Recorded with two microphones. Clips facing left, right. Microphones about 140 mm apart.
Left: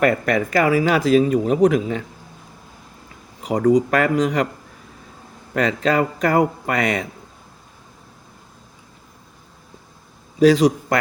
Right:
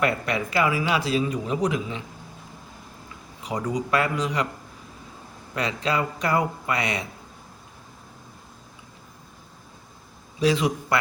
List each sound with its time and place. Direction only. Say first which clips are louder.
0.0 s speech: left 7 dB; 50° left (ahead or behind)
3.4 s speech: left 11 dB; 45° left (ahead or behind)
5.5 s speech: left 7 dB; 45° left (ahead or behind)
10.4 s a man's voice: left 9 dB; 40° left (ahead or behind)